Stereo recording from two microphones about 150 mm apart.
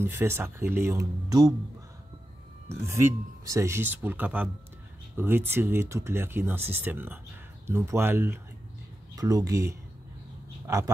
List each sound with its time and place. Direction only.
0.0 s speech: 15° right (ahead or behind)
2.7 s speech: 15° right (ahead or behind)